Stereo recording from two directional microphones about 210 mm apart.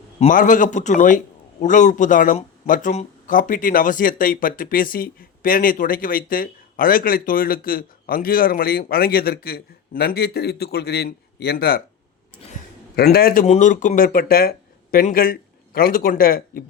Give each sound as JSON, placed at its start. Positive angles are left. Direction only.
{"t": 0.2, "sound": "a man's voice", "side_deg": 40}
{"t": 13.1, "sound": "speech", "side_deg": 45}
{"t": 13.4, "sound": "speech", "side_deg": 35}